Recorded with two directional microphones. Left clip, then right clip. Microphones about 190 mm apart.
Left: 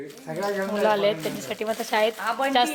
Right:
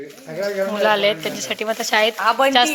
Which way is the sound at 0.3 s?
45° left (ahead or behind).